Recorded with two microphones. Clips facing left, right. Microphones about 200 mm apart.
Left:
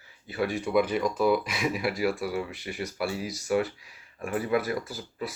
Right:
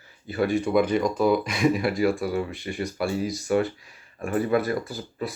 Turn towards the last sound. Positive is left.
turn(degrees=5)  # may be behind; listen again after turning